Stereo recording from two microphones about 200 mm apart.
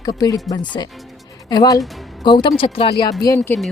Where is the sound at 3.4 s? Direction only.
5° left (ahead or behind).